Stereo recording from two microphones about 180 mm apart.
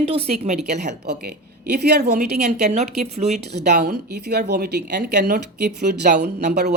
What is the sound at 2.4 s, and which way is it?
Speech, 40° right (ahead or behind).